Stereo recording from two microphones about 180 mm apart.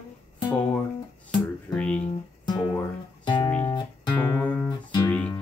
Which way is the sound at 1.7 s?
5° left (ahead or behind).